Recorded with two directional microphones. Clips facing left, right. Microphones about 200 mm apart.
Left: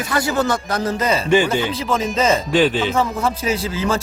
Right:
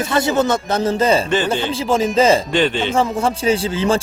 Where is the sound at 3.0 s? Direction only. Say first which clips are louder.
Right 2 dB; 30° right (ahead or behind).